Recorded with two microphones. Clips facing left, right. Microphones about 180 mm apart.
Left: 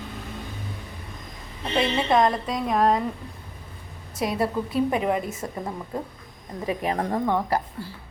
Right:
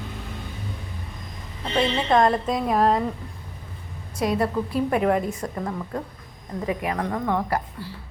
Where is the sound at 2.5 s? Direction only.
Centre (ahead or behind).